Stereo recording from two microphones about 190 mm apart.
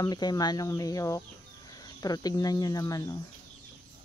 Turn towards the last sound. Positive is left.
turn(degrees=20)  # may be behind; listen again after turning